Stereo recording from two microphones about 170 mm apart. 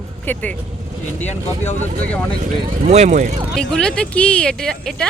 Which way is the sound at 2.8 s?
40° right (ahead or behind).